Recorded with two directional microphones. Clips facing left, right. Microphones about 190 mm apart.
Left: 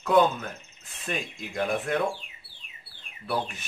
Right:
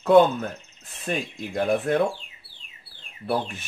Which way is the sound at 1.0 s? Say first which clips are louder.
Right 5 dB; 35° right (ahead or behind).